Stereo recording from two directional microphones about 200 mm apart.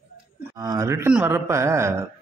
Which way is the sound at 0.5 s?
15° right (ahead or behind).